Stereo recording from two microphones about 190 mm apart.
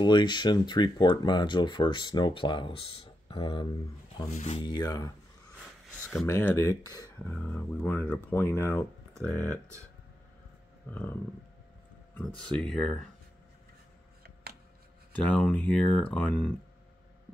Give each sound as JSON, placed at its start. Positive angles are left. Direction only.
{"t": 0.0, "sound": "speech", "side_deg": 25}
{"t": 4.3, "sound": "speech", "side_deg": 35}
{"t": 4.6, "sound": "speech", "side_deg": 20}
{"t": 6.2, "sound": "speech", "side_deg": 15}
{"t": 10.9, "sound": "speech", "side_deg": 10}
{"t": 15.1, "sound": "speech", "side_deg": 5}